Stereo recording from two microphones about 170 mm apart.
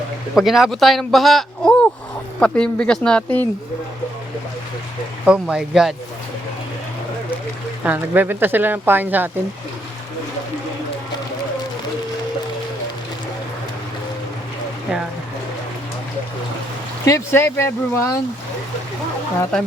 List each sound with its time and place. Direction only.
0.3 s a man's voice: centre (ahead or behind)
5.2 s a man's voice: 5° right (ahead or behind)
7.9 s speech: 10° right (ahead or behind)
17.1 s speech: 15° left (ahead or behind)
19.4 s a man's voice: 5° left (ahead or behind)